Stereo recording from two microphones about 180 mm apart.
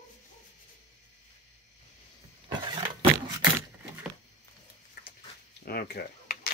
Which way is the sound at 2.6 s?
25° right (ahead or behind).